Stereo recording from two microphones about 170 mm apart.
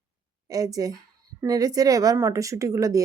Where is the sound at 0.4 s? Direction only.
20° right (ahead or behind).